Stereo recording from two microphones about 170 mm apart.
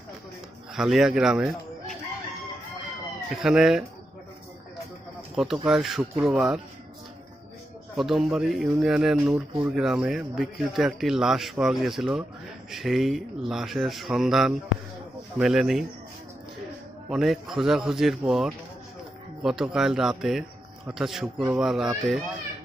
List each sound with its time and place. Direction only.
0.7 s speech: centre (ahead or behind)
3.3 s speech: 5° right (ahead or behind)
5.3 s speech: 5° right (ahead or behind)
7.9 s speech: centre (ahead or behind)
17.1 s speech: centre (ahead or behind)